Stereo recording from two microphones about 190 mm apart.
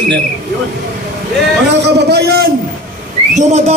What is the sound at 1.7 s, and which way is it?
Speech, 60° right (ahead or behind).